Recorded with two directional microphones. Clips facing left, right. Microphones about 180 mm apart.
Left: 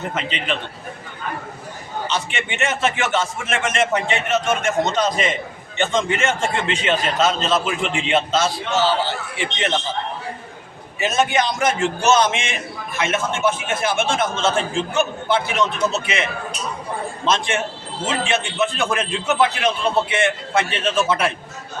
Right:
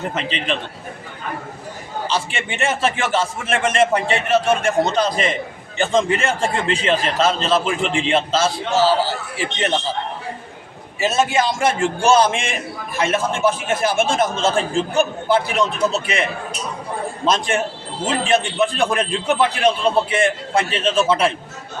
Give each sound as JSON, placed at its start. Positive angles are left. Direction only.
{"t": 0.2, "sound": "a man's voice", "side_deg": -35}
{"t": 2.0, "sound": "a man's voice", "side_deg": -30}
{"t": 7.6, "sound": "a man's voice", "side_deg": 0}
{"t": 7.9, "sound": "a man's voice", "side_deg": -30}
{"t": 11.6, "sound": "a man's voice", "side_deg": -30}